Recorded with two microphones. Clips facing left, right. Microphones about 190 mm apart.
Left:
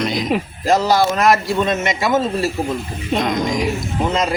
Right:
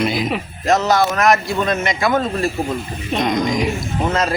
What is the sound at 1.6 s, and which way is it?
Speech, 20° left (ahead or behind).